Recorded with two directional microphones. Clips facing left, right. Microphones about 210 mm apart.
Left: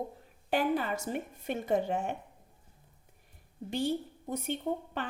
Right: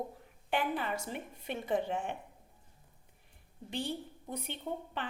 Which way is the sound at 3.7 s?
45° left (ahead or behind).